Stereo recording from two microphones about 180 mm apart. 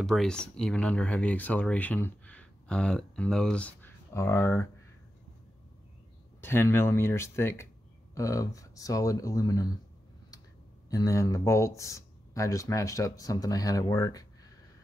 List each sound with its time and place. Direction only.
0.0 s speech: centre (ahead or behind)
6.4 s speech: 15° left (ahead or behind)
10.9 s speech: 20° left (ahead or behind)